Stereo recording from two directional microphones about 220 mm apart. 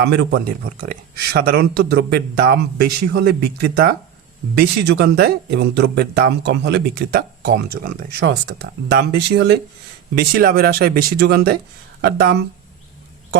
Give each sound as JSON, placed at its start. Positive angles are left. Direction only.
{"t": 0.0, "sound": "speech", "side_deg": -50}